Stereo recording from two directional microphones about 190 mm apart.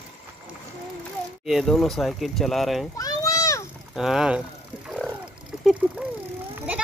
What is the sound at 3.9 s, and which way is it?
Speech, centre (ahead or behind).